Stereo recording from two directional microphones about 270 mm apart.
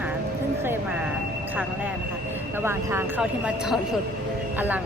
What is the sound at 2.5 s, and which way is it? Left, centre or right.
A woman's voice, centre.